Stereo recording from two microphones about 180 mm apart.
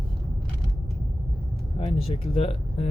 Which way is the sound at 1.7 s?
35° left (ahead or behind).